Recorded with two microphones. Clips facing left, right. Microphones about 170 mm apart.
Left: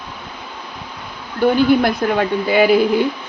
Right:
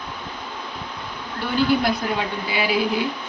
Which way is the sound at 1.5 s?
55° left (ahead or behind).